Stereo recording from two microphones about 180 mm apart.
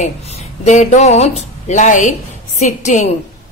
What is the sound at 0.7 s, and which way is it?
A woman's voice, 40° left (ahead or behind).